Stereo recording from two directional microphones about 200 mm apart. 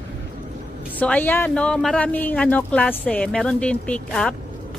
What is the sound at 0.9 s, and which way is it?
Speech, 5° left (ahead or behind).